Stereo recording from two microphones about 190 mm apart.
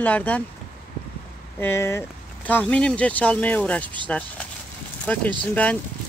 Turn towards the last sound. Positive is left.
turn(degrees=5)  # may be behind; listen again after turning